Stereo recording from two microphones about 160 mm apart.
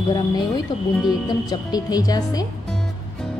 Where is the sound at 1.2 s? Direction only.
25° left (ahead or behind).